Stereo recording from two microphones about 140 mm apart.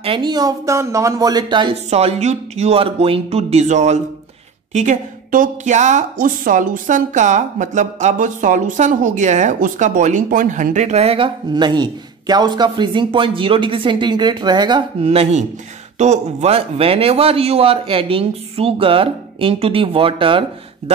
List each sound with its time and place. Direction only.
0.0 s speech: 35° right (ahead or behind)
1.9 s a man's voice: 50° right (ahead or behind)
4.7 s a woman's voice: 65° right (ahead or behind); by 14.8 s 30° right (ahead or behind)
15.0 s a man's voice: 50° right (ahead or behind)